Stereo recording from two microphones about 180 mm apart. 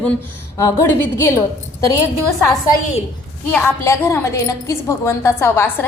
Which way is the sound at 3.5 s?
10° left (ahead or behind).